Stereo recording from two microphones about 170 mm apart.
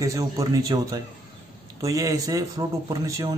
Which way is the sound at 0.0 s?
20° right (ahead or behind).